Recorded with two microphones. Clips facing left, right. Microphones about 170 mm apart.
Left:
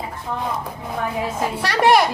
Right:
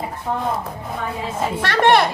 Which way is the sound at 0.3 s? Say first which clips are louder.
Right 4 dB; 50° right (ahead or behind).